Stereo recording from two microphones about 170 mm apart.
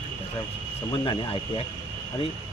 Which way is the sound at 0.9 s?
30° left (ahead or behind).